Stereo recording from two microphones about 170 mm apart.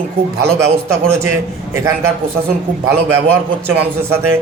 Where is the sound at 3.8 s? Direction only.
15° right (ahead or behind).